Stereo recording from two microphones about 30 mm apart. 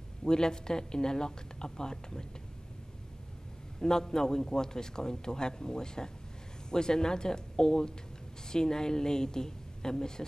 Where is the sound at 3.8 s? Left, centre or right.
Centre.